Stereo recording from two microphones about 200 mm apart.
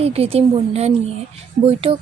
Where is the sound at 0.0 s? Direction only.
30° right (ahead or behind).